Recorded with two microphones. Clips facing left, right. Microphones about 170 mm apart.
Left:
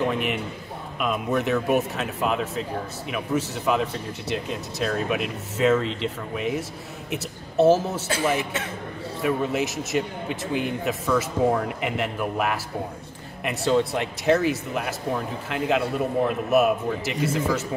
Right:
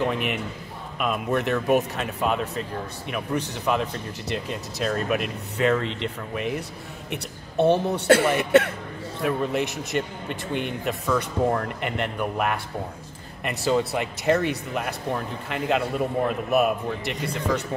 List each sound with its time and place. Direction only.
0.0 s a man's voice: centre (ahead or behind)
8.5 s a man's voice: 65° right (ahead or behind)
9.2 s speech: centre (ahead or behind)